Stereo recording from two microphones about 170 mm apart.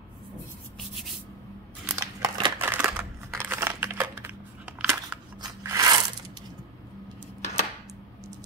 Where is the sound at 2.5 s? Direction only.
10° right (ahead or behind).